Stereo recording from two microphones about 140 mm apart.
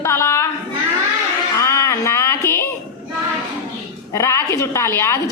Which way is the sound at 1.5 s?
20° left (ahead or behind).